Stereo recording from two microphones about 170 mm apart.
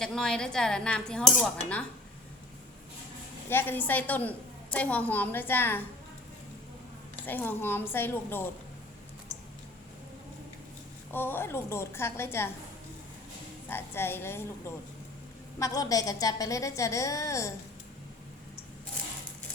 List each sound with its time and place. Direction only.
0.0 s speech: 5° left (ahead or behind)
3.5 s a woman's voice: 10° left (ahead or behind)
7.3 s a woman's voice: 10° left (ahead or behind)
11.1 s a woman's voice: 10° left (ahead or behind)
13.7 s a woman's voice: 15° left (ahead or behind)
15.5 s a woman's voice: 20° left (ahead or behind)